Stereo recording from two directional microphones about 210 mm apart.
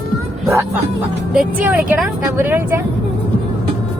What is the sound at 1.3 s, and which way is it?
Speech, 5° right (ahead or behind).